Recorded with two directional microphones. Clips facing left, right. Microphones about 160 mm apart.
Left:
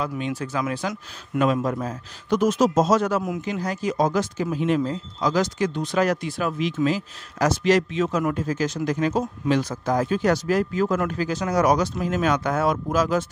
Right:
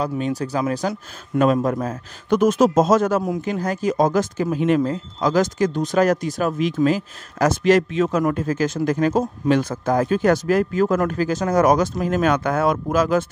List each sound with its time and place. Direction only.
0.0 s speech: 35° right (ahead or behind); by 13.2 s 55° right (ahead or behind)